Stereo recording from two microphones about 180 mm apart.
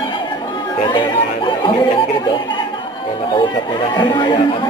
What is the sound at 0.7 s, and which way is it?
Speech, 25° left (ahead or behind).